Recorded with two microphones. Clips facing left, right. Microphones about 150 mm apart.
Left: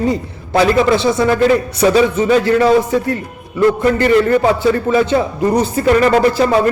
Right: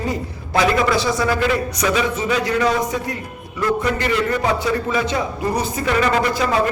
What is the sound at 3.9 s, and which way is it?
Speech, 50° left (ahead or behind).